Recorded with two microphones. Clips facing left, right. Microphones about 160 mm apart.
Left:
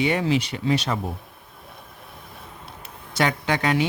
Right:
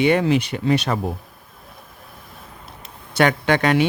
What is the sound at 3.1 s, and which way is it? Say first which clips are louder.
Speech: right 5 dB; 65° right (ahead or behind).